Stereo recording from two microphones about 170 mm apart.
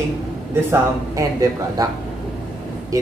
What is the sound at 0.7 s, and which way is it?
Speech, 20° right (ahead or behind).